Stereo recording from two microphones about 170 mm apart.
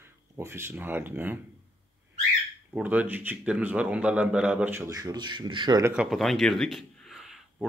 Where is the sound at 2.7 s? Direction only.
10° right (ahead or behind); by 5.8 s 25° right (ahead or behind).